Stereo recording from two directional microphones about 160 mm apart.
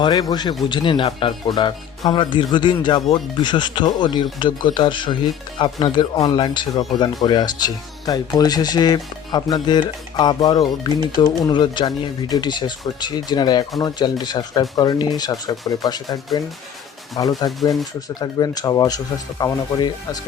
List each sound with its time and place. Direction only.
0.0 s speech: 25° left (ahead or behind)
17.2 s speech: 25° left (ahead or behind)
17.6 s speech: centre (ahead or behind)
18.1 s speech: 25° left (ahead or behind)